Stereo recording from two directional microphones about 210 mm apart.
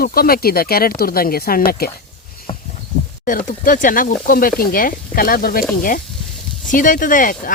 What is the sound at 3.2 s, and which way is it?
Speech, 40° left (ahead or behind).